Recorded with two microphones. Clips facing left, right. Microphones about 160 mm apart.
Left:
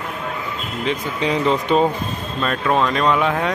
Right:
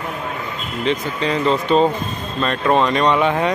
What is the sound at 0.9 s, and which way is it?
Speech, 15° left (ahead or behind).